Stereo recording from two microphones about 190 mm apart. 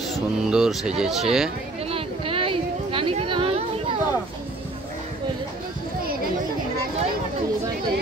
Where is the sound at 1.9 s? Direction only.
30° right (ahead or behind).